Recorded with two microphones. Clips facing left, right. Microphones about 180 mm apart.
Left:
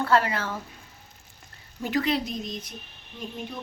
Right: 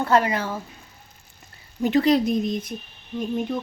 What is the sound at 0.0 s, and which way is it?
Speech, 20° right (ahead or behind).